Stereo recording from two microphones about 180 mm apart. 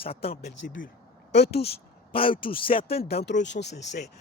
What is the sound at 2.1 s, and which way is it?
Speech, 30° left (ahead or behind).